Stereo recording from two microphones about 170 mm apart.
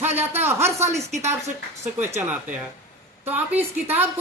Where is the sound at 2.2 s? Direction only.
10° right (ahead or behind).